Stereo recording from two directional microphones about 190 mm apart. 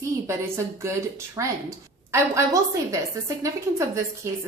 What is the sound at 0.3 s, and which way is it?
Speech, 15° right (ahead or behind).